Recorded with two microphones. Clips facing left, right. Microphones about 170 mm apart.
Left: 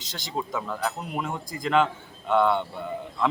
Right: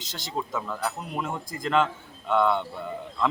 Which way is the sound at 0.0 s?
Centre (ahead or behind).